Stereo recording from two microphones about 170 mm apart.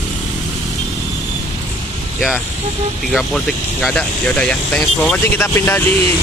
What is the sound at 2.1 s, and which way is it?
Speech, centre (ahead or behind).